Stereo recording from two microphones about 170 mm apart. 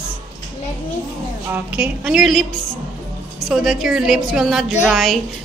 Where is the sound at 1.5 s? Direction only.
10° right (ahead or behind).